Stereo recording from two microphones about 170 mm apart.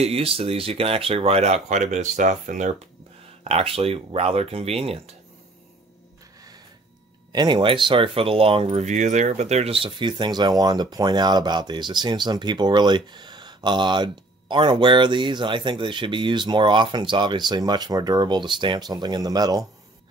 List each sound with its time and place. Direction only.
0.0 s speech: 35° right (ahead or behind)
3.4 s speech: 35° right (ahead or behind)
7.3 s speech: 30° right (ahead or behind)